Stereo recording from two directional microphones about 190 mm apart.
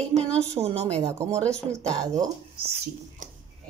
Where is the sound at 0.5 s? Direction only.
35° right (ahead or behind).